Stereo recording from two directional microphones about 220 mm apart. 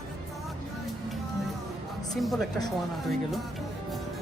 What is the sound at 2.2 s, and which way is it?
Speech, centre (ahead or behind).